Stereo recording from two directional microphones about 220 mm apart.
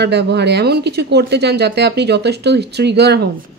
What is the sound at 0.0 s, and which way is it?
Speech, 50° right (ahead or behind).